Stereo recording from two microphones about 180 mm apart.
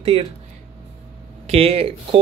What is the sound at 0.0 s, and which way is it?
Speech, 30° right (ahead or behind).